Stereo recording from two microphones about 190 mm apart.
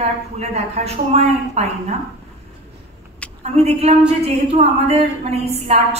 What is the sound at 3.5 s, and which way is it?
A woman's voice, 35° right (ahead or behind).